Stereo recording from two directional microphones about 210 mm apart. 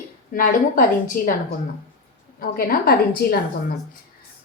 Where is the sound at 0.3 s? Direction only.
40° left (ahead or behind).